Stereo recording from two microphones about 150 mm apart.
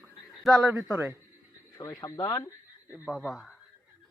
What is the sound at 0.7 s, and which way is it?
Speech, 15° right (ahead or behind).